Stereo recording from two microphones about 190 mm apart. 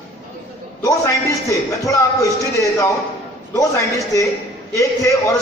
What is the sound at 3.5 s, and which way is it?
Speech, 15° left (ahead or behind).